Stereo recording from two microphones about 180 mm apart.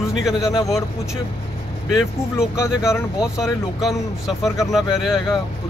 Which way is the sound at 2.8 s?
15° left (ahead or behind).